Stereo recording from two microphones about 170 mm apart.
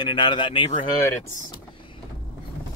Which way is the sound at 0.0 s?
25° left (ahead or behind).